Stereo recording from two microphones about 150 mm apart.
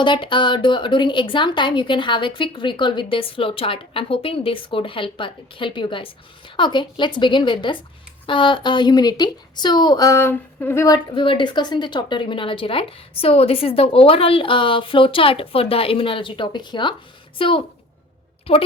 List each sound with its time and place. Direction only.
0.0 s a woman's voice: 30° left (ahead or behind)